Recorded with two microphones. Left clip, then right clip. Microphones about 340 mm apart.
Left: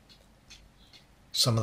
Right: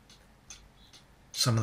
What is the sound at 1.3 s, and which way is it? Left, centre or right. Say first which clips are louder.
Speech: left 3 dB; centre.